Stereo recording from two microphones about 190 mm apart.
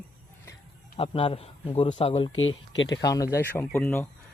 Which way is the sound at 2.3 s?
90° left.